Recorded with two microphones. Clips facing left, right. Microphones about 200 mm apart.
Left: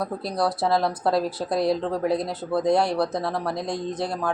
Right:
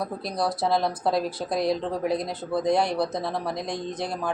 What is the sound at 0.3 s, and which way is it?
A woman's voice, 5° left (ahead or behind).